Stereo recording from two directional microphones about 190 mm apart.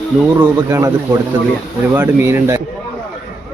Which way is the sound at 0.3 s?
15° right (ahead or behind).